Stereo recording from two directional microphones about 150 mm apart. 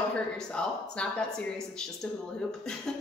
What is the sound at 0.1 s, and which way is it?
A woman's voice, 5° left (ahead or behind).